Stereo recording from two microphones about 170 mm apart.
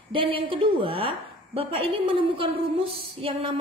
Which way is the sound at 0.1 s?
30° right (ahead or behind).